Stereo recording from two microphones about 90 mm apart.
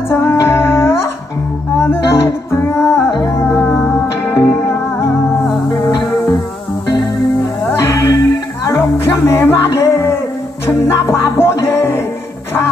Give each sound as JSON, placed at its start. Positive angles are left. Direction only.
{"t": 0.1, "sound": "music", "side_deg": 30}
{"t": 7.8, "sound": "music", "side_deg": 30}